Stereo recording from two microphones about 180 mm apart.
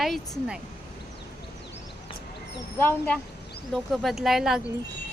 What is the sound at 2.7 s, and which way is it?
Speech, 10° left (ahead or behind).